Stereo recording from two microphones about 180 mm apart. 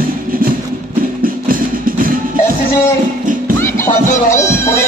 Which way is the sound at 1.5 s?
50° right (ahead or behind).